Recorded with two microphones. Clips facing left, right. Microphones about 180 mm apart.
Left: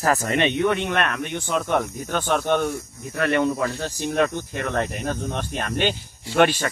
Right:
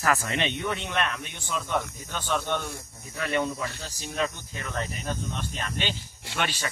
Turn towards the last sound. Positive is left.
turn(degrees=55)  # may be behind; listen again after turning